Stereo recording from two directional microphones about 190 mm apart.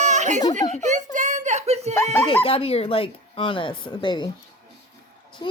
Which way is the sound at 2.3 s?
30° left (ahead or behind).